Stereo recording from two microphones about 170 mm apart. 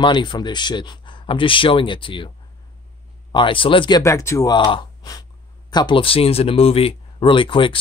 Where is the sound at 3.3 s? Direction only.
30° left (ahead or behind).